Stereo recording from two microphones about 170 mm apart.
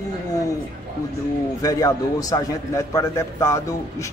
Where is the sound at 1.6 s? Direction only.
20° left (ahead or behind).